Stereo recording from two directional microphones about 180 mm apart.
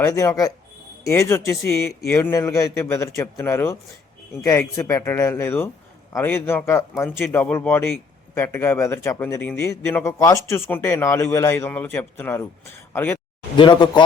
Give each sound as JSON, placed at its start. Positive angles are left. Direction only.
{"t": 0.0, "sound": "a man's voice", "side_deg": 15}
{"t": 13.6, "sound": "speech", "side_deg": 25}